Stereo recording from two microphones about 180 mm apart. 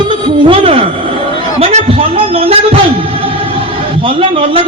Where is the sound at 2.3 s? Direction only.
30° right (ahead or behind).